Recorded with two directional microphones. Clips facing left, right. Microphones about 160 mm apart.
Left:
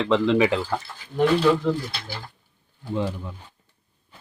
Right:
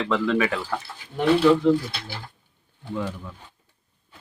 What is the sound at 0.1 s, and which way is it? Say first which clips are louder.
Speech: left 4 dB; 20° left (ahead or behind).